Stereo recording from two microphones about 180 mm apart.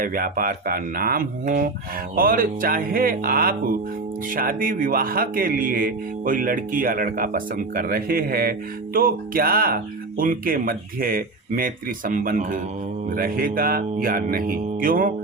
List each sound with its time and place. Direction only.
0.0 s speech: 50° right (ahead or behind)